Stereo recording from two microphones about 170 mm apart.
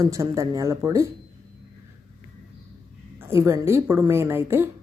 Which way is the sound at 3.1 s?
15° right (ahead or behind).